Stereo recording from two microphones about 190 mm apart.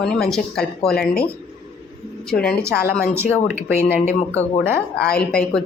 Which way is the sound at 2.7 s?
55° left (ahead or behind).